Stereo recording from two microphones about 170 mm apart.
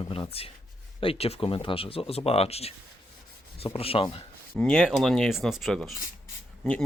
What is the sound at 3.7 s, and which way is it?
Speech, 35° left (ahead or behind).